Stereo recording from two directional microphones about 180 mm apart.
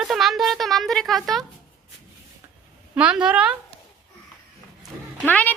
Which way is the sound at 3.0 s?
5° right (ahead or behind).